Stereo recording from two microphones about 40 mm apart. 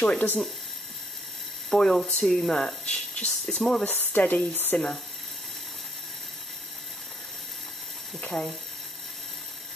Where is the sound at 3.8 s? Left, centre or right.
Left.